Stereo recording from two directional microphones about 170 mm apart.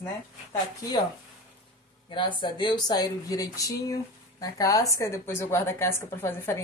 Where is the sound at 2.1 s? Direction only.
30° left (ahead or behind).